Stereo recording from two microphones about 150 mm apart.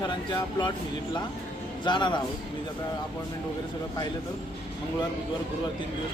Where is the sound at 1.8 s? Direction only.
30° left (ahead or behind).